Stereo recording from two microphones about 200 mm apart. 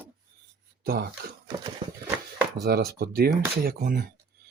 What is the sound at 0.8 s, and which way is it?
Speech, 50° right (ahead or behind).